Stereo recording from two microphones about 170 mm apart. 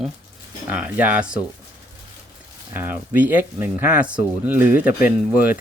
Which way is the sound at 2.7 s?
10° right (ahead or behind).